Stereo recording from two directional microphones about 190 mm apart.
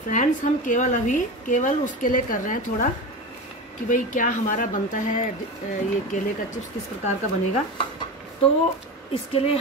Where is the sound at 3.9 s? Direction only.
45° left (ahead or behind).